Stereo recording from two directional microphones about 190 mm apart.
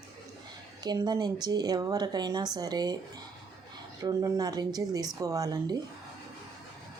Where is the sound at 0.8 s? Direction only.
20° right (ahead or behind).